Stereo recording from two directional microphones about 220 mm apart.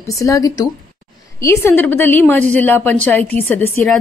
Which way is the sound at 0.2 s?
15° left (ahead or behind).